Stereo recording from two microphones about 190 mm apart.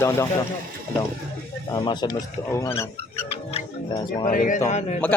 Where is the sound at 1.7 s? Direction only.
20° left (ahead or behind).